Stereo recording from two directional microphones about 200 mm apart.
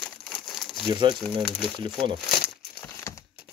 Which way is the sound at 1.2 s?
Centre (ahead or behind).